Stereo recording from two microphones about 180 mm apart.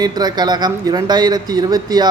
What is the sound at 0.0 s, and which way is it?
Speech, 25° right (ahead or behind).